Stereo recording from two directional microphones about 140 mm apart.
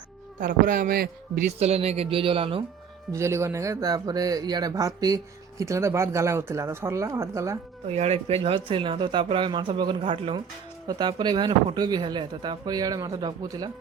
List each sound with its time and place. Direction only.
0.3 s a man's voice: 75° right (ahead or behind); by 2.6 s 40° right (ahead or behind)
3.1 s speech: 20° right (ahead or behind)
7.9 s speech: 50° right (ahead or behind); by 13.7 s 30° right (ahead or behind)